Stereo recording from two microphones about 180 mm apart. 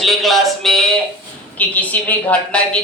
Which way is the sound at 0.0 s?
Centre (ahead or behind).